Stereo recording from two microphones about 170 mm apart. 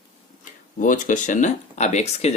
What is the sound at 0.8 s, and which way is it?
Speech, 50° left (ahead or behind).